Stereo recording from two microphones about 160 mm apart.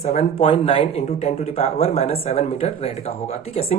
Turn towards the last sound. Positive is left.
turn(degrees=40)  # may be behind; listen again after turning